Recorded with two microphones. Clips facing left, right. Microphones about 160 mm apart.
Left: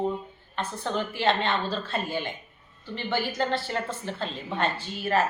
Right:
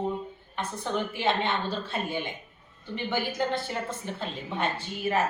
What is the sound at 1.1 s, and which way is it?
A woman's voice, 15° right (ahead or behind).